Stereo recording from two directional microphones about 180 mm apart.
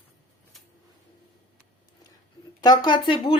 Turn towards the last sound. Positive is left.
turn(degrees=25)  # may be behind; listen again after turning